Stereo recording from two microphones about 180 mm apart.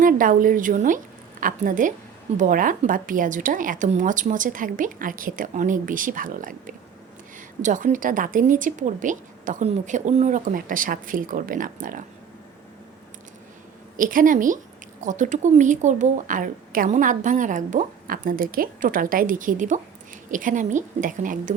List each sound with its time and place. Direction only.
0.0 s a woman's voice: 50° right (ahead or behind)
13.9 s a woman's voice: 50° right (ahead or behind)